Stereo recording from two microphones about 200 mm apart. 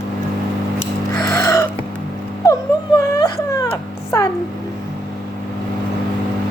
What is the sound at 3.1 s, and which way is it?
Whimper, 15° left (ahead or behind).